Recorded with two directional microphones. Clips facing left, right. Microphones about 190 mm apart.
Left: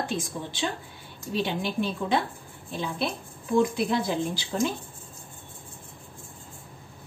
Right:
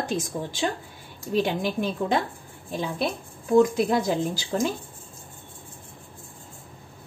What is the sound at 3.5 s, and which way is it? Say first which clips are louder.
Speech: right 4 dB; 45° right (ahead or behind).